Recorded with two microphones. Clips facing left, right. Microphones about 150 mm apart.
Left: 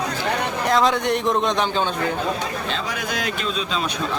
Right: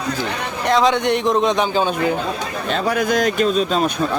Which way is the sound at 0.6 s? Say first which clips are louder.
Right 4 dB; centre (ahead or behind).